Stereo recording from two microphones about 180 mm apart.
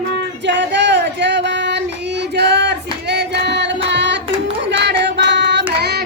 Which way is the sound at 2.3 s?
70° right (ahead or behind).